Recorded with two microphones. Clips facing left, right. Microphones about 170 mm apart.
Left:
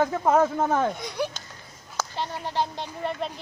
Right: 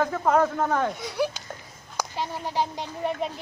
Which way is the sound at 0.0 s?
10° left (ahead or behind).